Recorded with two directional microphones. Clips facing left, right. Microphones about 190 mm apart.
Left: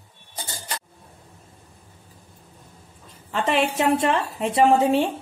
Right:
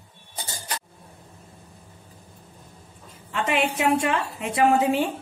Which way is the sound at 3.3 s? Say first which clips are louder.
Left 2 dB; 35° left (ahead or behind).